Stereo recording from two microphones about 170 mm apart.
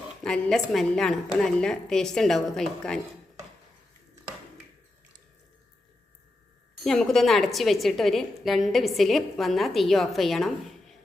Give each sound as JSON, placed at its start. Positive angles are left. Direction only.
{"t": 0.2, "sound": "a woman's voice", "side_deg": 5}
{"t": 6.8, "sound": "a woman's voice", "side_deg": 0}